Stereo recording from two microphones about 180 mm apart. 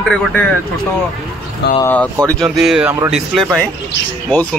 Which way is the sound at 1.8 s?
10° left (ahead or behind).